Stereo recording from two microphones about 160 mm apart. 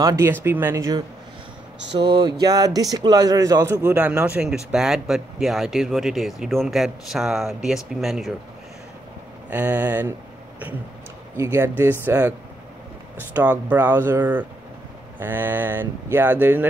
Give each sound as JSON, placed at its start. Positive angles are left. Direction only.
{"t": 0.0, "sound": "speech", "side_deg": -20}
{"t": 2.0, "sound": "a sound", "side_deg": -30}
{"t": 2.4, "sound": "a man's voice", "side_deg": -20}
{"t": 9.5, "sound": "speech", "side_deg": -10}
{"t": 11.3, "sound": "speech", "side_deg": -20}